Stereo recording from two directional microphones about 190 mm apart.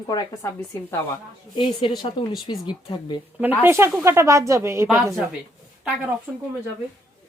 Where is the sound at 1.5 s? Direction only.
25° left (ahead or behind).